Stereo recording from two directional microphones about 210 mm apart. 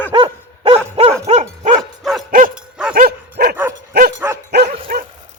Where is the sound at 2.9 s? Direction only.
45° right (ahead or behind).